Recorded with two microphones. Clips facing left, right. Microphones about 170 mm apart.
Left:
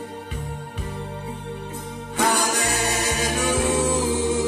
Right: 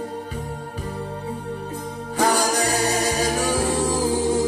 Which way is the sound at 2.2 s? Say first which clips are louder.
Right 2 dB; 35° right (ahead or behind).